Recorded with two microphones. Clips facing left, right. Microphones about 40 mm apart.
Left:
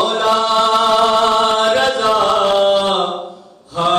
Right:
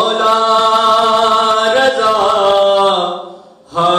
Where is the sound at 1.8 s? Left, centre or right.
Right.